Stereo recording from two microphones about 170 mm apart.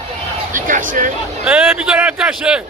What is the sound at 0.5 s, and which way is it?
Speech, 50° right (ahead or behind).